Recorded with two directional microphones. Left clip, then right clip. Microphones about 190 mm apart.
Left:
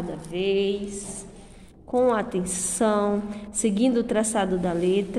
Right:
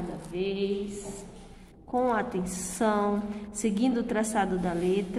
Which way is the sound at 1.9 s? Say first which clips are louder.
Left 5 dB; 20° left (ahead or behind).